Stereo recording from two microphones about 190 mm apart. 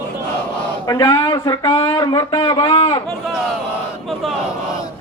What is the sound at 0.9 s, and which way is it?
Speech, 20° left (ahead or behind).